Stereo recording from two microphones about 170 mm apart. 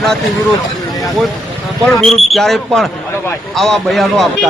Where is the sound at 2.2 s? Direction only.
Centre (ahead or behind).